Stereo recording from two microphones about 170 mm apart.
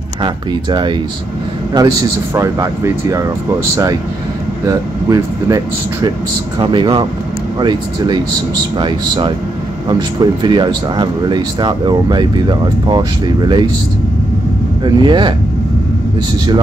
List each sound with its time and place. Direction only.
0.2 s speech: 25° right (ahead or behind)
4.6 s speech: 20° right (ahead or behind)
6.6 s speech: 30° right (ahead or behind)
8.7 s speech: 30° right (ahead or behind)
14.8 s speech: 25° right (ahead or behind)